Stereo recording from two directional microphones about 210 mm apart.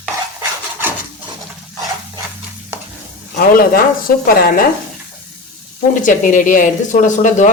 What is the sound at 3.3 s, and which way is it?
Speech, 45° left (ahead or behind).